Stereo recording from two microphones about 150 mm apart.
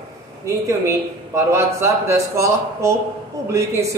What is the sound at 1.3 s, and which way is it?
A man's voice, 20° right (ahead or behind).